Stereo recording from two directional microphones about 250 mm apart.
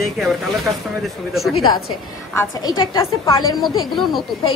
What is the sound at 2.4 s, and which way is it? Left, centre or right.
Speech, centre.